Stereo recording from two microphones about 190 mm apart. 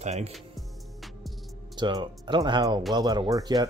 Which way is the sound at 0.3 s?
Centre (ahead or behind).